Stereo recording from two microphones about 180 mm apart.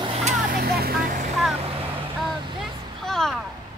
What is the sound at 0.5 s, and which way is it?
Vehicle, 55° right (ahead or behind).